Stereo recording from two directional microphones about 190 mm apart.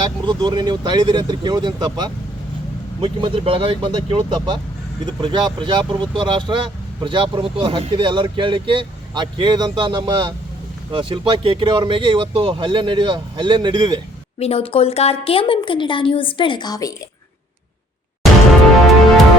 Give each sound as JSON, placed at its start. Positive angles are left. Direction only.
{"t": 0.0, "sound": "speech", "side_deg": -25}
{"t": 14.3, "sound": "a woman's voice", "side_deg": 35}